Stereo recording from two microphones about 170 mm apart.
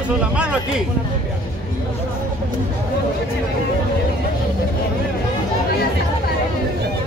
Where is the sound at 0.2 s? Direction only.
5° right (ahead or behind).